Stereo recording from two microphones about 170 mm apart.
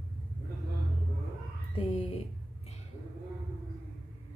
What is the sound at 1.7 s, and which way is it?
Speech, 35° left (ahead or behind).